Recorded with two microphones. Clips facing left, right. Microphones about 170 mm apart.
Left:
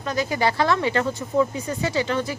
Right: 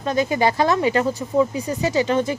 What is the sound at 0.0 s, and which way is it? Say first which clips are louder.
A woman's voice: right 4 dB; 25° right (ahead or behind).